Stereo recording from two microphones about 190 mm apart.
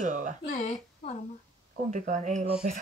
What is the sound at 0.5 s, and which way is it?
Speech, 35° left (ahead or behind).